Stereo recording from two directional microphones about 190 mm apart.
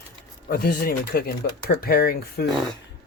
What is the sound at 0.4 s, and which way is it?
Speech, 50° left (ahead or behind).